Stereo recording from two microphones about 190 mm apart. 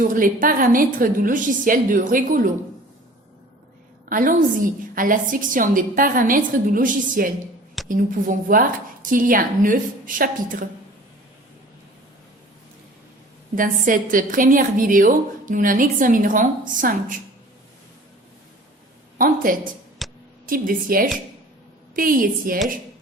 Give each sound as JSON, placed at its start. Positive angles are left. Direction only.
{"t": 0.0, "sound": "a woman's voice", "side_deg": -45}
{"t": 4.1, "sound": "a woman's voice", "side_deg": -45}
{"t": 13.6, "sound": "a woman's voice", "side_deg": -45}
{"t": 19.2, "sound": "a woman's voice", "side_deg": -45}
{"t": 20.0, "sound": "a sound", "side_deg": 0}
{"t": 20.5, "sound": "a woman's voice", "side_deg": -50}